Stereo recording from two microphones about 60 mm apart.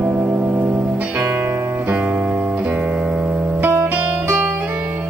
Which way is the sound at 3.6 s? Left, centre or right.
Right.